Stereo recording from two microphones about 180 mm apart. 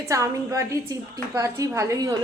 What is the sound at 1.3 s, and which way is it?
Speech, 15° right (ahead or behind).